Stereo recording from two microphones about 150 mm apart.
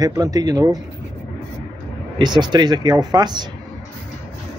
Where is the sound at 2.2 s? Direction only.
30° right (ahead or behind).